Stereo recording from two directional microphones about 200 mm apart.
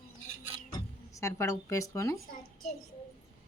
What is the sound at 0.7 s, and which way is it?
Speech, 15° left (ahead or behind).